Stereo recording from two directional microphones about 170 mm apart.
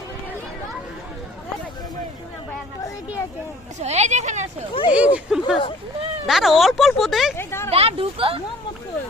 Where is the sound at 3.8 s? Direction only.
40° right (ahead or behind).